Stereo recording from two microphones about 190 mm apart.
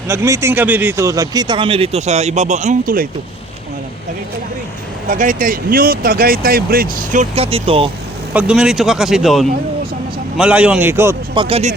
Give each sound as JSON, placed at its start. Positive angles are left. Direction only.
{"t": 0.1, "sound": "speech", "side_deg": -15}
{"t": 5.0, "sound": "speech", "side_deg": -45}
{"t": 8.3, "sound": "a man's voice", "side_deg": -5}
{"t": 11.3, "sound": "speech", "side_deg": -30}